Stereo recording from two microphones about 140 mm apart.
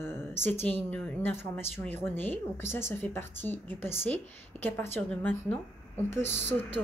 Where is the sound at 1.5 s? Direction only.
Centre (ahead or behind).